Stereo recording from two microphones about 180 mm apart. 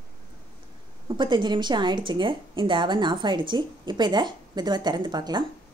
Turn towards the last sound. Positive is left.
turn(degrees=-25)  # may be behind; listen again after turning